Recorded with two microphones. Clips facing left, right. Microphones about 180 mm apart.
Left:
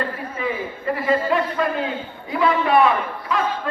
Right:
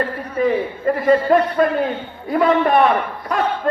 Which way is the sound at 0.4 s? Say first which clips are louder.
Right 8 dB; 45° right (ahead or behind).